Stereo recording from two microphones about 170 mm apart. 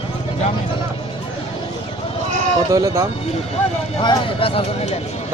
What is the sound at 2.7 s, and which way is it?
Speech, 20° right (ahead or behind).